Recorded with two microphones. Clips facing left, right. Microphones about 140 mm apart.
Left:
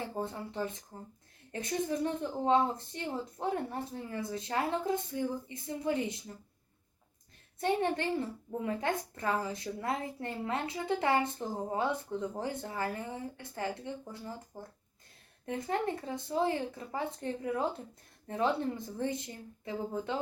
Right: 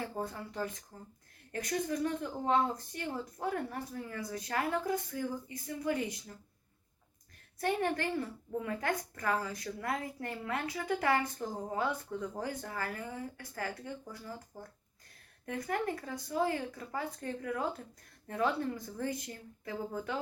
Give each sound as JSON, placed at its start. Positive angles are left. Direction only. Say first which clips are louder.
{"t": 0.0, "sound": "a child's voice", "louder": "left 1 dB", "side_deg": 25}
{"t": 7.6, "sound": "a child's voice", "louder": "left 2 dB", "side_deg": 25}
{"t": 15.4, "sound": "a child's voice", "louder": "left 2 dB", "side_deg": 25}